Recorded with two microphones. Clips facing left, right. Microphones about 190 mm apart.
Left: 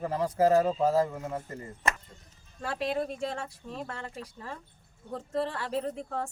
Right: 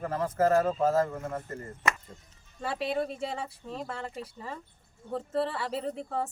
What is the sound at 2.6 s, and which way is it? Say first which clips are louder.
Speech: even; 5° right (ahead or behind).